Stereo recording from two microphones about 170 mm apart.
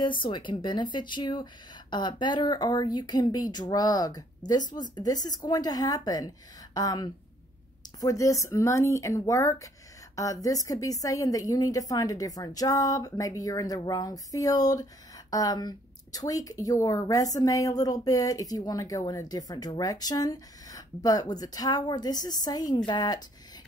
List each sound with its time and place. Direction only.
0.0 s speech: 30° left (ahead or behind)